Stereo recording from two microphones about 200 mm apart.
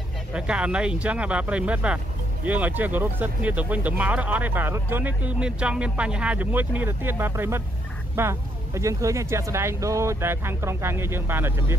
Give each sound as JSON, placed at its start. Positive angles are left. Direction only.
{"t": 0.3, "sound": "speech", "side_deg": -5}